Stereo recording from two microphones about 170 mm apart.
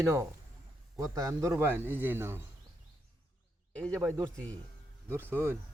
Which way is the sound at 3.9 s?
15° right (ahead or behind).